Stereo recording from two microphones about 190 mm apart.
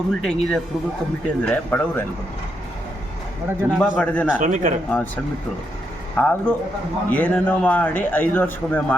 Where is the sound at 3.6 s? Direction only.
10° right (ahead or behind).